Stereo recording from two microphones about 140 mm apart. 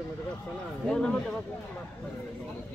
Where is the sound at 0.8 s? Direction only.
5° left (ahead or behind).